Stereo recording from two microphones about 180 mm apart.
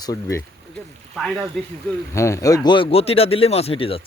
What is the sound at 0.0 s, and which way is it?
Speech, 20° left (ahead or behind).